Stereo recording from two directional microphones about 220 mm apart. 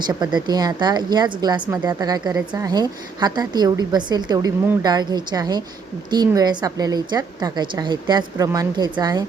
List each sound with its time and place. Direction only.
0.1 s a woman's voice: 20° right (ahead or behind)